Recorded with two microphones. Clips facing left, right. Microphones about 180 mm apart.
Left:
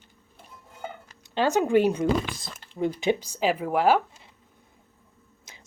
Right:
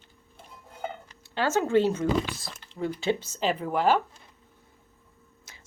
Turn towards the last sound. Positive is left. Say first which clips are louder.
# left 2 dB
turn(degrees=20)  # may be behind; listen again after turning